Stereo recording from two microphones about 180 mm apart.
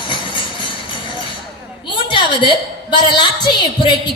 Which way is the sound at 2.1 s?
25° left (ahead or behind).